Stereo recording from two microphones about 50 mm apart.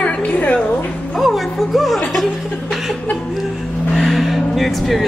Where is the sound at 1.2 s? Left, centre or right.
Centre.